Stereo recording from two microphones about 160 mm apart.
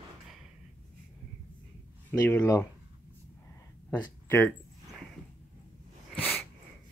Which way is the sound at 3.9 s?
10° left (ahead or behind).